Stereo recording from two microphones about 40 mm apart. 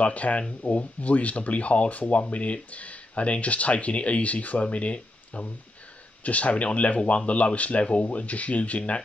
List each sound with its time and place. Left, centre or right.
0.0 s speech: left